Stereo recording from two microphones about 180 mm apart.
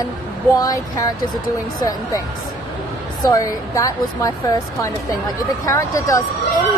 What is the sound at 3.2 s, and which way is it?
Speech, 20° left (ahead or behind).